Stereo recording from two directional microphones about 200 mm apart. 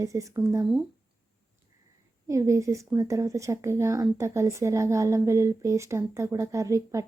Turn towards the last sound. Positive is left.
turn(degrees=-15)  # may be behind; listen again after turning